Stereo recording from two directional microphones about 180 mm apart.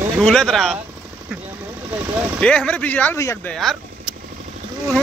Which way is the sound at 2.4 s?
5° left (ahead or behind).